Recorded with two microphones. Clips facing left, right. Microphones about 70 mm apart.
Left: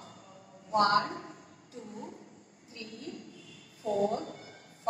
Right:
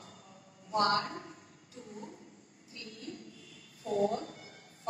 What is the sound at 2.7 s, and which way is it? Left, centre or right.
Cat, left.